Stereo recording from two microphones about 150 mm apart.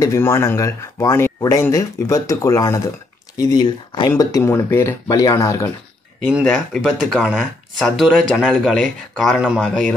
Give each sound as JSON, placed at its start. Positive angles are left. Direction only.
{"t": 0.0, "sound": "speech", "side_deg": 20}
{"t": 6.4, "sound": "speech", "side_deg": 0}